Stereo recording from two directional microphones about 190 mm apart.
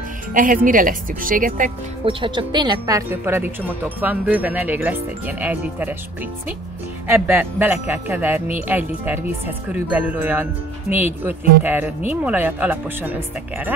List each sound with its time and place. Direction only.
0.3 s speech: 45° right (ahead or behind)
2.0 s a woman's voice: 25° right (ahead or behind); by 5.9 s 10° right (ahead or behind)
7.1 s a woman's voice: 10° right (ahead or behind)